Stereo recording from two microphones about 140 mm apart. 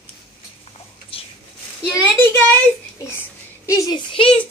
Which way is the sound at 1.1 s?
40° left (ahead or behind).